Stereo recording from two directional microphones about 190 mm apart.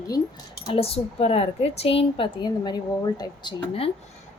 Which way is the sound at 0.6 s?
30° left (ahead or behind).